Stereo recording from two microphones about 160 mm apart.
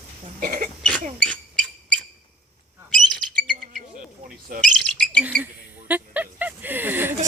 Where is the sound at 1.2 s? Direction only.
5° left (ahead or behind).